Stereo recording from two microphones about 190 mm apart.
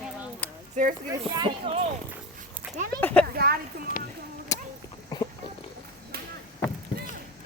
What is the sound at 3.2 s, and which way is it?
Speech, 55° right (ahead or behind).